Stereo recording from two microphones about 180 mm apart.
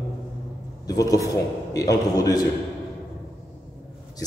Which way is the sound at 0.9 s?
20° left (ahead or behind).